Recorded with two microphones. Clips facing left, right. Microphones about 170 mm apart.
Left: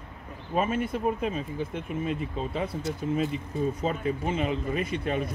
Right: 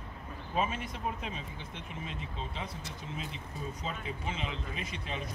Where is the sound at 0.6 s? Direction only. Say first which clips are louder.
Left 7 dB; 55° left (ahead or behind).